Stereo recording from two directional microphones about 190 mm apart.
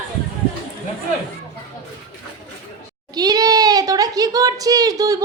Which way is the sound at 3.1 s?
20° right (ahead or behind).